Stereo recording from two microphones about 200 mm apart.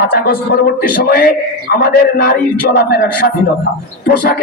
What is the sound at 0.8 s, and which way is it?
A man's voice, 45° left (ahead or behind).